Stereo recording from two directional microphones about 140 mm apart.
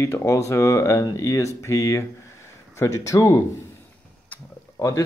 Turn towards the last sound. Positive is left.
turn(degrees=25)  # may be behind; listen again after turning